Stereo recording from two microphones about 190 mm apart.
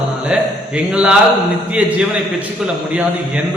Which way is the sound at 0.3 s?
5° right (ahead or behind).